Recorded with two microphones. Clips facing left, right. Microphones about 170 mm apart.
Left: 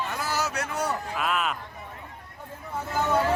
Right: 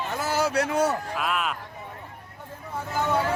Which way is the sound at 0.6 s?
60° right (ahead or behind).